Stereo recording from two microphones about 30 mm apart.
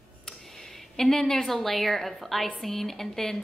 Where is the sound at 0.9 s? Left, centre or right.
Centre.